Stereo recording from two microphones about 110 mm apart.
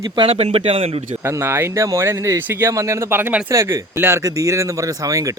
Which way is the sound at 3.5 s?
25° right (ahead or behind).